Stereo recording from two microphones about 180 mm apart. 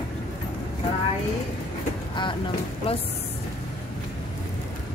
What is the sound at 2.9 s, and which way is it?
Speech, 30° left (ahead or behind).